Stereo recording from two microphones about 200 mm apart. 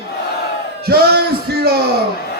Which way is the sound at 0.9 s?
50° right (ahead or behind).